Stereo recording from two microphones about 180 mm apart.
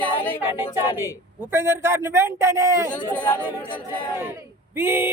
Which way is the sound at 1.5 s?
15° right (ahead or behind).